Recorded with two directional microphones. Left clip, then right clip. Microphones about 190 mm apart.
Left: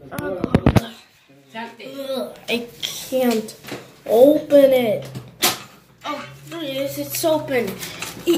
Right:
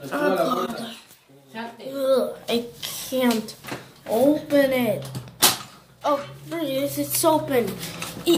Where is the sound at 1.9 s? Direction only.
20° right (ahead or behind).